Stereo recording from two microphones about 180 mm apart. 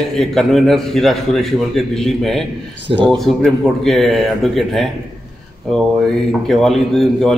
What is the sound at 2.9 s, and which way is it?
Speech, 30° right (ahead or behind).